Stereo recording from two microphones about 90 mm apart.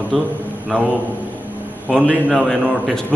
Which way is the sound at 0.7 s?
15° left (ahead or behind).